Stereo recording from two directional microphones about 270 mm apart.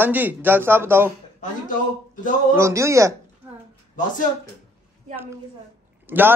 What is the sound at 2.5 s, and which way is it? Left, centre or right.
Speech, centre.